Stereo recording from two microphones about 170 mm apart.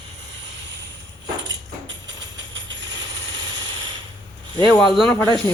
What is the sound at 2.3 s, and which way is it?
Tambourine, 90° right.